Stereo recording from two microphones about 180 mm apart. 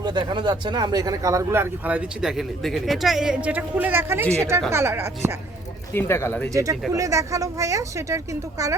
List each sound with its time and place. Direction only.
0.0 s speech: 25° right (ahead or behind)
5.9 s speech: 15° left (ahead or behind)
6.5 s speech: 20° right (ahead or behind)